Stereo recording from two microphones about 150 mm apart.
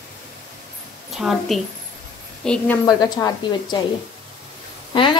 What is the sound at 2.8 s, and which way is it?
Speech, 25° left (ahead or behind).